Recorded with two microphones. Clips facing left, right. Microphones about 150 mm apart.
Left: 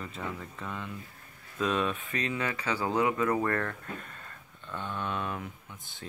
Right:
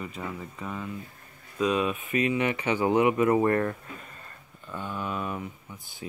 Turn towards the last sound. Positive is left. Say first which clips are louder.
# right 4 dB
turn(degrees=-5)  # may be behind; listen again after turning